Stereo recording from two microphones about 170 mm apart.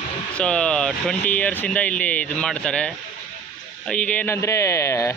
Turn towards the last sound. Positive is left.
turn(degrees=15)  # may be behind; listen again after turning